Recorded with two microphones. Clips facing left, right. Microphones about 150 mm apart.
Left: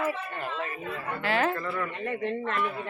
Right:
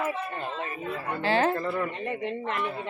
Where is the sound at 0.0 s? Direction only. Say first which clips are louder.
Even; 25° right (ahead or behind).